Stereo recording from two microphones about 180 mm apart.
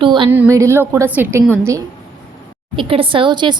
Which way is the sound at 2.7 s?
30° right (ahead or behind).